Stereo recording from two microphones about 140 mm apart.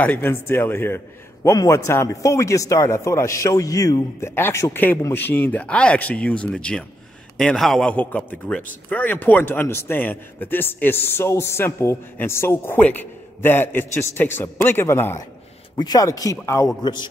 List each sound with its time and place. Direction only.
0.0 s a man's voice: 15° left (ahead or behind)
15.7 s speech: 25° left (ahead or behind)
16.8 s a man's voice: 30° left (ahead or behind)